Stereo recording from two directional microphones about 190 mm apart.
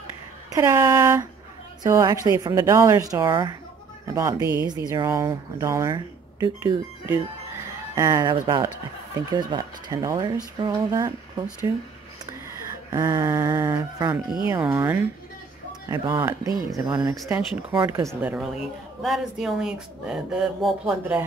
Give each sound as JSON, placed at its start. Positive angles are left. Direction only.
{"t": 0.6, "sound": "a woman's voice", "side_deg": -15}
{"t": 12.9, "sound": "a woman's voice", "side_deg": -20}